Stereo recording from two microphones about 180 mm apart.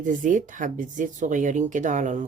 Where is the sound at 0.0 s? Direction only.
45° right (ahead or behind).